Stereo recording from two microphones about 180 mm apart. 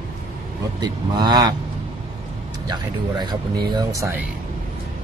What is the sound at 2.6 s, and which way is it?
Speech, 25° right (ahead or behind).